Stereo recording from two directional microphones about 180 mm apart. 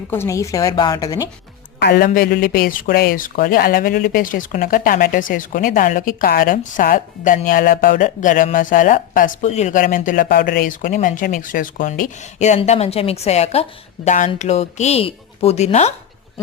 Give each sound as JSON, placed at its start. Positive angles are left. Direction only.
{"t": 0.1, "sound": "a woman's voice", "side_deg": 15}
{"t": 1.8, "sound": "a man's voice", "side_deg": 60}